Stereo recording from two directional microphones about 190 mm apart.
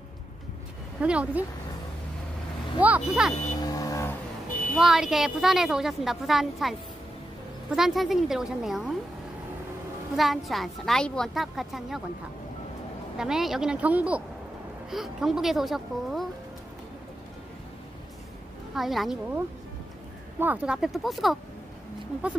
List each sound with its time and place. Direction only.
1.0 s speech: 5° right (ahead or behind)
2.8 s a woman's voice: 5° right (ahead or behind)
3.6 s vehicle: 20° left (ahead or behind)
4.7 s a woman's voice: 5° right (ahead or behind)
7.7 s a woman's voice: centre (ahead or behind)
10.1 s a woman's voice: centre (ahead or behind)
13.2 s a woman's voice: centre (ahead or behind)
18.8 s a woman's voice: centre (ahead or behind)